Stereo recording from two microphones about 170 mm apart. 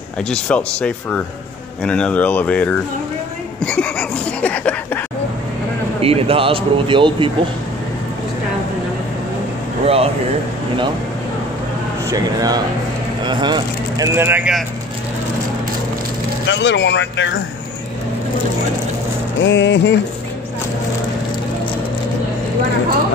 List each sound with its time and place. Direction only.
0.3 s speech: 5° left (ahead or behind)
3.6 s a sound: 5° left (ahead or behind)
5.9 s speech: 35° right (ahead or behind)
9.8 s speech: 35° right (ahead or behind)
12.1 s speech: 20° right (ahead or behind)
14.0 s speech: 15° right (ahead or behind)
16.4 s speech: 90° left
19.4 s speech: 90° left